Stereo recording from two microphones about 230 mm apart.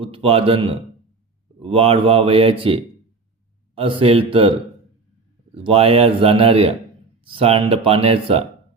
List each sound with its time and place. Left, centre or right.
0.0 s speech: right
5.5 s speech: right